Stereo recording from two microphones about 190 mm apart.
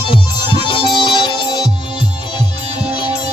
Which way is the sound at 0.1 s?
25° left (ahead or behind).